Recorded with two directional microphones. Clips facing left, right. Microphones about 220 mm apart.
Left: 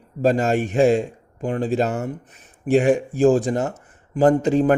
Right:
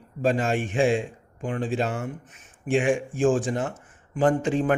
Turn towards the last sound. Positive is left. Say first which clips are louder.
# left 6 dB
turn(degrees=40)  # may be behind; listen again after turning